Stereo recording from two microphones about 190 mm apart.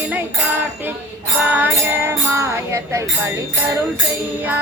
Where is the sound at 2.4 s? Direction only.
15° right (ahead or behind).